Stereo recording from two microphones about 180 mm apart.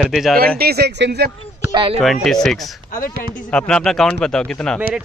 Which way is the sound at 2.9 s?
50° left (ahead or behind).